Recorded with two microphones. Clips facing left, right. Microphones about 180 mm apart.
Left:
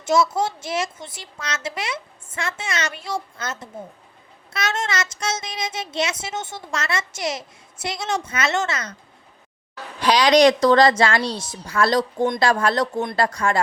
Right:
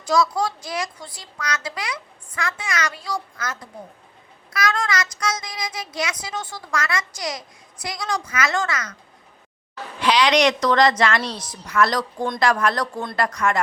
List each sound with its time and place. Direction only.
0.0 s speech: 25° left (ahead or behind)
10.0 s speech: 40° left (ahead or behind)